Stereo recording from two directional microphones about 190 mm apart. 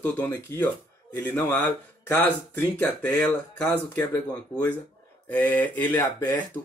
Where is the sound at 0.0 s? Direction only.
10° left (ahead or behind).